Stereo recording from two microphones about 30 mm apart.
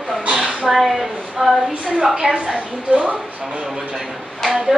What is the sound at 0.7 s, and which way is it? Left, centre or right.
Speech, centre.